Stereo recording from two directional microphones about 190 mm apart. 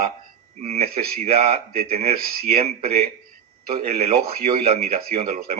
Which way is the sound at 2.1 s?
55° right (ahead or behind).